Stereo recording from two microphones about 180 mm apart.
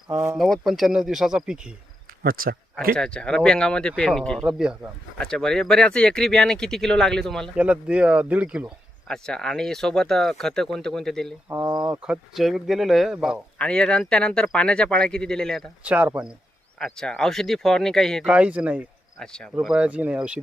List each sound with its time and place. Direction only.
0.1 s speech: 5° right (ahead or behind)
2.2 s speech: 55° right (ahead or behind)
2.9 s speech: 5° left (ahead or behind)
11.4 s speech: 15° right (ahead or behind); by 15.6 s 5° left (ahead or behind)
15.8 s speech: 10° right (ahead or behind)
16.7 s speech: 5° left (ahead or behind)
19.2 s speech: 5° left (ahead or behind)
19.5 s speech: 5° right (ahead or behind)